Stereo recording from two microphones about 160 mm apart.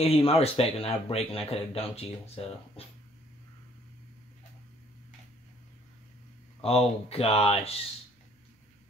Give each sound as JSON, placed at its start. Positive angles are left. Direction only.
{"t": 0.0, "sound": "speech", "side_deg": 35}
{"t": 6.6, "sound": "speech", "side_deg": 40}